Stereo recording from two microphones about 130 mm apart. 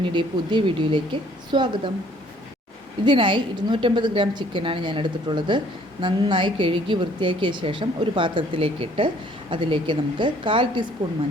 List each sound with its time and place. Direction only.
0.1 s a woman's voice: 40° right (ahead or behind)
3.0 s a woman's voice: 40° right (ahead or behind)